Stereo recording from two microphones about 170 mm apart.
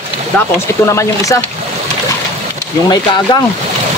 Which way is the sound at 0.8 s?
15° left (ahead or behind).